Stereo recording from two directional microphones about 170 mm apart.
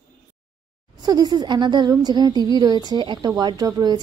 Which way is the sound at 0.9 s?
25° right (ahead or behind).